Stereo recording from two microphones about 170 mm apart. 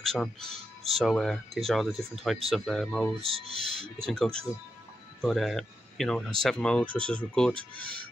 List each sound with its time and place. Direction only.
0.0 s speech: 5° left (ahead or behind)
3.2 s speech: 35° right (ahead or behind)
4.0 s speech: 5° left (ahead or behind)